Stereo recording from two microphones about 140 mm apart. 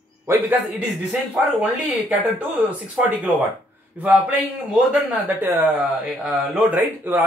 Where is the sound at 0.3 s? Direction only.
15° right (ahead or behind).